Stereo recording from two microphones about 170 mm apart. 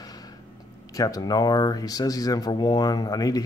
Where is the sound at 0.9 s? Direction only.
20° left (ahead or behind).